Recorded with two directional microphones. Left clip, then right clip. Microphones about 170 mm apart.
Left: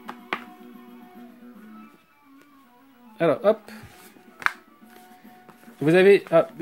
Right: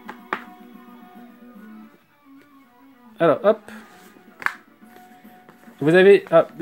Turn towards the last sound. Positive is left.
turn(degrees=10)  # may be behind; listen again after turning